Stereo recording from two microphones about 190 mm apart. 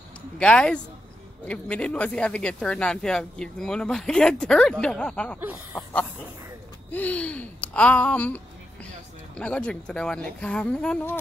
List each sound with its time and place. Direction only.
0.4 s speech: 5° left (ahead or behind)
6.9 s a sound: 10° left (ahead or behind)
9.4 s speech: 5° left (ahead or behind)